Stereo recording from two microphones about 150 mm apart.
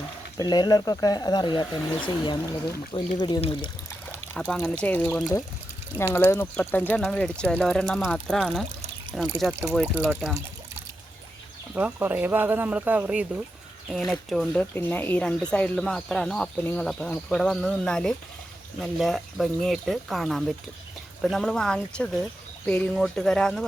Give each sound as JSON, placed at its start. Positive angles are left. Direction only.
{"t": 0.3, "sound": "speech", "side_deg": 25}
{"t": 4.4, "sound": "speech", "side_deg": 0}
{"t": 4.8, "sound": "speech", "side_deg": 10}
{"t": 9.5, "sound": "speech", "side_deg": -15}
{"t": 11.7, "sound": "speech", "side_deg": -10}
{"t": 13.9, "sound": "speech", "side_deg": 0}